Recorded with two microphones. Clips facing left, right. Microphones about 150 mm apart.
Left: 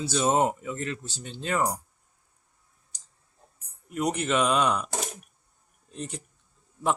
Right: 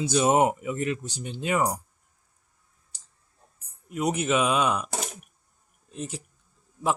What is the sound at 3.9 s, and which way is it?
A man's voice, 5° right (ahead or behind).